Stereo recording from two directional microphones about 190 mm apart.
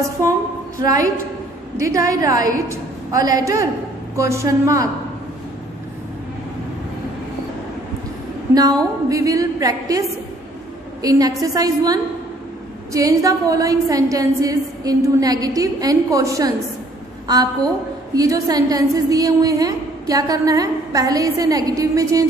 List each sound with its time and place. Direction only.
0.7 s a woman's voice: 20° right (ahead or behind)
8.5 s a woman's voice: 20° right (ahead or behind)
18.1 s a woman's voice: 20° right (ahead or behind)